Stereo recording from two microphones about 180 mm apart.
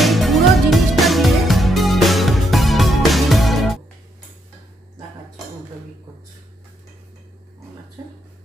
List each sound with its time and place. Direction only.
0.0 s music: centre (ahead or behind)